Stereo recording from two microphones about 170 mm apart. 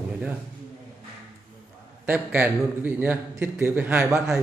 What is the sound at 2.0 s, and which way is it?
A man's voice, 10° right (ahead or behind).